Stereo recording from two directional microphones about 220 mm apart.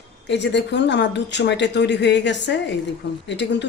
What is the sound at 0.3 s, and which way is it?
Speech, 50° left (ahead or behind).